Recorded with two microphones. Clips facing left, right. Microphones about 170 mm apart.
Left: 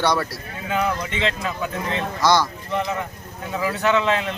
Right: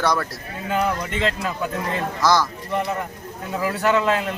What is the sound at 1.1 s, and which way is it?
Speech, 50° right (ahead or behind).